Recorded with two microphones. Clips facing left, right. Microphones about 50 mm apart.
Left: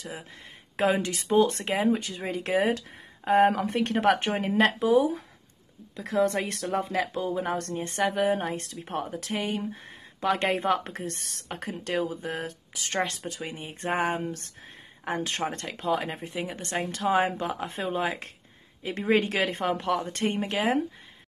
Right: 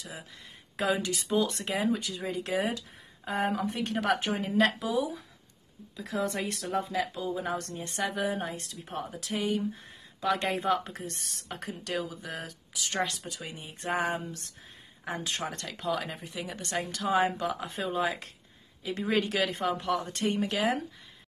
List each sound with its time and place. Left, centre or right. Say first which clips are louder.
0.0 s speech: left 4 dB; left